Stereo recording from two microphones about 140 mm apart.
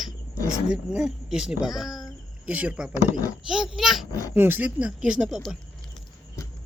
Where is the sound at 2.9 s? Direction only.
25° left (ahead or behind).